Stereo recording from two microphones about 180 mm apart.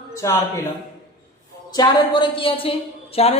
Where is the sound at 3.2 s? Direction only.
35° left (ahead or behind).